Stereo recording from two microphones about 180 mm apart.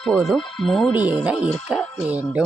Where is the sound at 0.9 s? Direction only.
20° left (ahead or behind).